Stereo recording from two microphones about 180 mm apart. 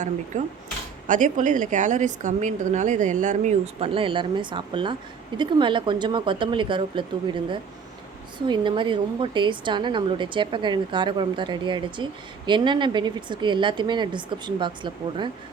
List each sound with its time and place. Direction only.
0.3 s a woman's voice: 45° right (ahead or behind); by 15.3 s 25° right (ahead or behind)